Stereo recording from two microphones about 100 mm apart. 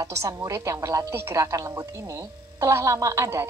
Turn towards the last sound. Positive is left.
turn(degrees=-30)  # may be behind; listen again after turning